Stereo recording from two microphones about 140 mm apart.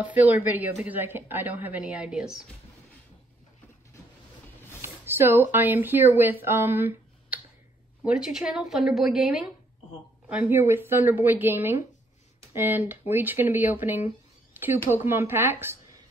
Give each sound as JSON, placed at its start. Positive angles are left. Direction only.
{"t": 0.0, "sound": "speech", "side_deg": -10}
{"t": 4.8, "sound": "a woman's voice", "side_deg": -15}
{"t": 14.5, "sound": "a sound", "side_deg": -15}
{"t": 14.9, "sound": "speech", "side_deg": -15}